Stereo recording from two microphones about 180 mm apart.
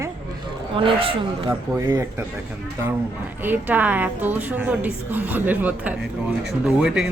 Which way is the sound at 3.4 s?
10° right (ahead or behind).